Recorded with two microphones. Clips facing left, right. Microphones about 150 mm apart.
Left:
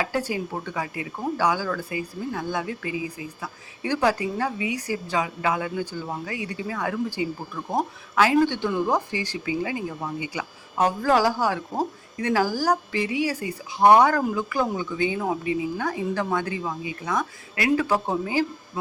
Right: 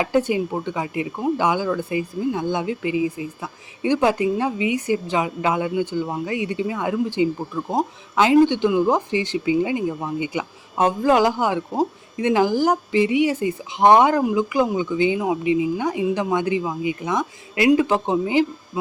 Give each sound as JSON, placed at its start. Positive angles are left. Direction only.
{"t": 0.0, "sound": "speech", "side_deg": -20}